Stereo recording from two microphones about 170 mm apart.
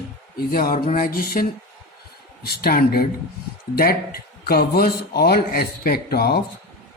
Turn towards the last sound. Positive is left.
turn(degrees=65)  # may be behind; listen again after turning